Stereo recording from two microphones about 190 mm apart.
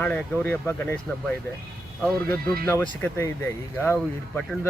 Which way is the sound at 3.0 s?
10° left (ahead or behind).